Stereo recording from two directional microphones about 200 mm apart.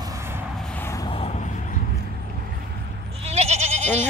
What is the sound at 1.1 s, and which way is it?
Vehicle, 35° left (ahead or behind).